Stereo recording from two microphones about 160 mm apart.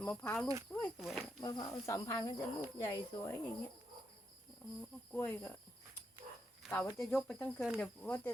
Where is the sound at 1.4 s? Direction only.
25° left (ahead or behind).